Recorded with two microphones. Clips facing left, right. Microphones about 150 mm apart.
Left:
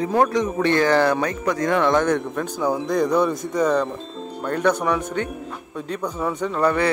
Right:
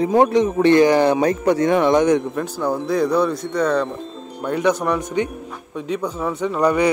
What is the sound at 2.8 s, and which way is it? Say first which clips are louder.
Speech: right 2 dB; 5° right (ahead or behind).